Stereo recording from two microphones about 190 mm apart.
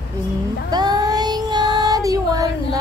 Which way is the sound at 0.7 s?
20° right (ahead or behind).